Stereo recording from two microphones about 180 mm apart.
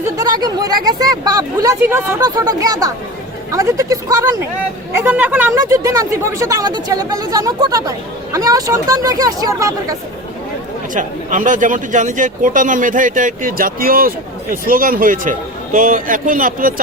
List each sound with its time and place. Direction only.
0.0 s speech: 20° right (ahead or behind)
10.9 s speech: 45° right (ahead or behind)